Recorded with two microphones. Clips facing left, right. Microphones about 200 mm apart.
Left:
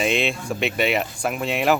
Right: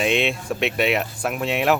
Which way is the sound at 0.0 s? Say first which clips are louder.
Right 1 dB; centre (ahead or behind).